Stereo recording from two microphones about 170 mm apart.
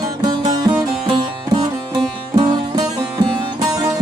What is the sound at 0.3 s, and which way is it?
Music, 25° right (ahead or behind).